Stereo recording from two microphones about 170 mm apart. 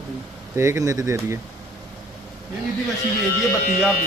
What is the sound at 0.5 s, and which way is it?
Speech, 15° right (ahead or behind).